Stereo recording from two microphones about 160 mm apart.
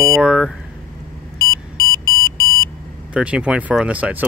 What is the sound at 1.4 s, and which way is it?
Beep, 20° left (ahead or behind).